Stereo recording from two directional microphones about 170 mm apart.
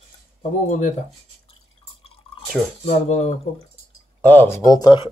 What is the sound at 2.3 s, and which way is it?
Drip, 35° left (ahead or behind).